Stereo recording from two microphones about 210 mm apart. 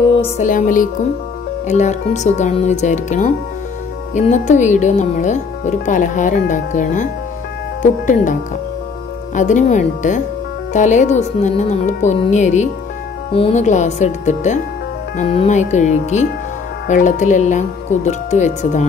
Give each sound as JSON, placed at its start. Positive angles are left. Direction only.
{"t": 0.4, "sound": "speech", "side_deg": 40}